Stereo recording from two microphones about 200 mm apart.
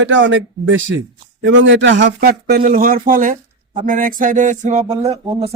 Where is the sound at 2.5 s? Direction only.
45° right (ahead or behind).